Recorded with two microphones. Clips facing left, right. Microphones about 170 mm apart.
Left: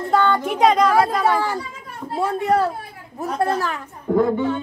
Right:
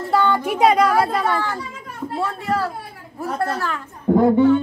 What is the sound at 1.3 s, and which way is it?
A woman's voice, 10° left (ahead or behind).